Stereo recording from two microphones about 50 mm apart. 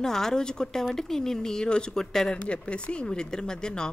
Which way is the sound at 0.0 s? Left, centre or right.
Centre.